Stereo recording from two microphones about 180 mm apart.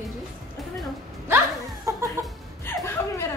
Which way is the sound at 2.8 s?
15° left (ahead or behind).